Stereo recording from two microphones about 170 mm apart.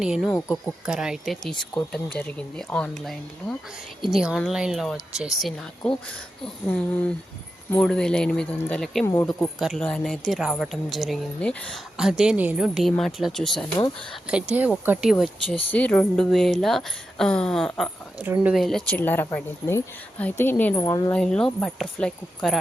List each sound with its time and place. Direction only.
0.0 s a woman's voice: 5° right (ahead or behind)
15.7 s a woman's voice: 10° left (ahead or behind)
20.7 s a woman's voice: 20° left (ahead or behind)
21.1 s a woman's voice: 5° left (ahead or behind)